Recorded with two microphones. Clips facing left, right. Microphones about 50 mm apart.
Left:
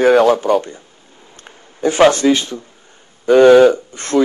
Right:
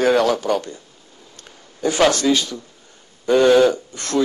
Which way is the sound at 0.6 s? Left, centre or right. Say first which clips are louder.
Left 2 dB; left.